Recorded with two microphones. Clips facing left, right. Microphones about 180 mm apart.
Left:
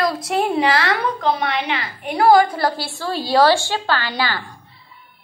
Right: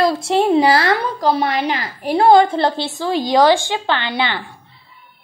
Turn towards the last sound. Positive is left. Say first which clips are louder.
# right 2 dB
turn(degrees=-20)  # may be behind; listen again after turning